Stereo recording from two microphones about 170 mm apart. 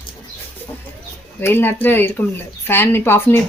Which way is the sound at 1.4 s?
15° left (ahead or behind).